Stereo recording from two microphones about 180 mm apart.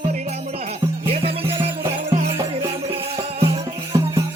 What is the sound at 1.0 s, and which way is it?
Music, 35° right (ahead or behind).